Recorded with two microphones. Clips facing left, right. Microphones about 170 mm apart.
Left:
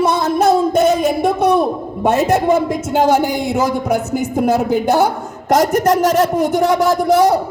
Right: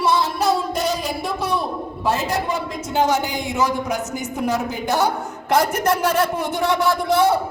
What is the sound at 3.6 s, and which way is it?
Speech, 50° left (ahead or behind).